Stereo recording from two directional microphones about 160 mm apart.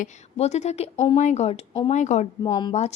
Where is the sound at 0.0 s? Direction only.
45° left (ahead or behind).